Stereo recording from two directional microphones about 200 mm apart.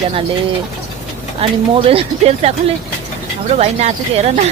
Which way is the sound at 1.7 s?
30° right (ahead or behind).